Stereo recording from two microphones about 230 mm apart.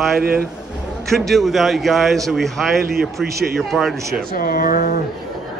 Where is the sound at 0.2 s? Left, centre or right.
Right.